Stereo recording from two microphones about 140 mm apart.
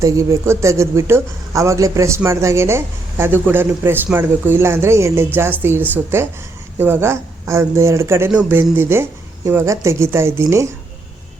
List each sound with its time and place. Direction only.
0.0 s speech: 20° right (ahead or behind)